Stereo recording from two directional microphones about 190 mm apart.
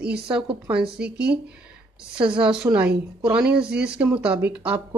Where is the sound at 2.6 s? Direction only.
5° right (ahead or behind).